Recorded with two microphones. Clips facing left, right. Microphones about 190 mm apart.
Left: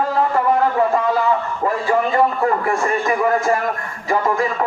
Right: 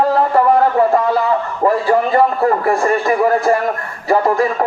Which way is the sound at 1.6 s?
40° right (ahead or behind).